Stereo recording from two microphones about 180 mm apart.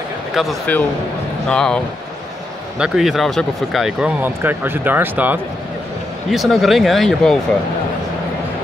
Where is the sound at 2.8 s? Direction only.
Centre (ahead or behind).